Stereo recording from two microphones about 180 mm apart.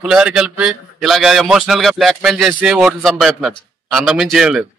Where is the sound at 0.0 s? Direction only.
5° right (ahead or behind).